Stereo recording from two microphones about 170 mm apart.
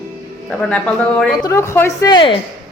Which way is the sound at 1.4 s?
15° left (ahead or behind).